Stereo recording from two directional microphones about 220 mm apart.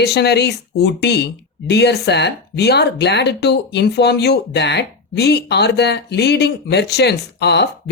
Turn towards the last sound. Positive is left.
turn(degrees=50)  # may be behind; listen again after turning